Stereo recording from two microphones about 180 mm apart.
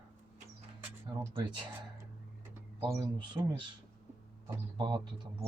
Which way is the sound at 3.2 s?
25° right (ahead or behind).